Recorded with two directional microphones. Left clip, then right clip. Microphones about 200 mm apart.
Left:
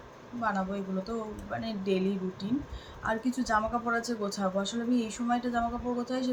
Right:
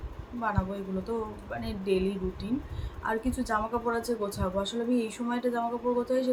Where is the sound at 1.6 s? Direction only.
15° right (ahead or behind).